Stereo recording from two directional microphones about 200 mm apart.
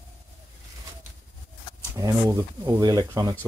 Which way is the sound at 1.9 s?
15° right (ahead or behind).